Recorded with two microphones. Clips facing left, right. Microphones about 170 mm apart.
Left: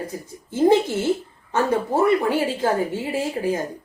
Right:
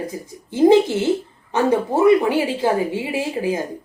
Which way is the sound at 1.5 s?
15° right (ahead or behind).